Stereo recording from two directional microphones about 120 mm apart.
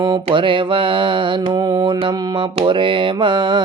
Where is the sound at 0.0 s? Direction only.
40° right (ahead or behind).